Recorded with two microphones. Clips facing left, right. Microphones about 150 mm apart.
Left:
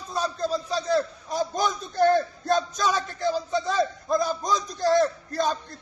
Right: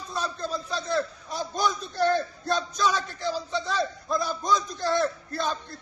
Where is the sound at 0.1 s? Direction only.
40° left (ahead or behind).